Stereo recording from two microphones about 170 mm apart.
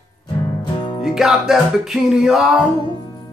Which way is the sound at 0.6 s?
30° left (ahead or behind).